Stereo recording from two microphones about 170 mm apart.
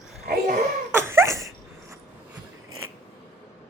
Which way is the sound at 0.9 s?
15° right (ahead or behind).